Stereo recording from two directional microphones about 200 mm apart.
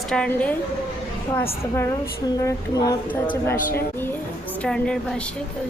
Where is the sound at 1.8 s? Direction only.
15° left (ahead or behind).